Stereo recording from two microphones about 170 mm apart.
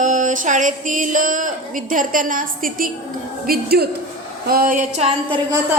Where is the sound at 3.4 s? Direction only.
65° right (ahead or behind).